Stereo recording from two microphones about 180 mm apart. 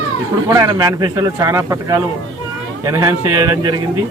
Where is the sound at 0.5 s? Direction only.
20° right (ahead or behind).